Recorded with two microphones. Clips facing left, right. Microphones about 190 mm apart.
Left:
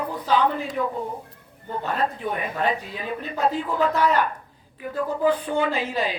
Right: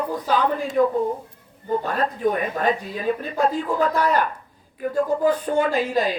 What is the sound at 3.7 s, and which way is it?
Speech, 40° right (ahead or behind).